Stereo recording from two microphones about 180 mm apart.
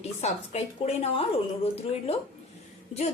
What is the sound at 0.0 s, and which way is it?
A woman's voice, 35° left (ahead or behind).